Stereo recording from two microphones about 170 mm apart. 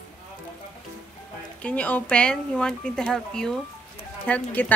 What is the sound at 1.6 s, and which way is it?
A woman's voice, 10° left (ahead or behind).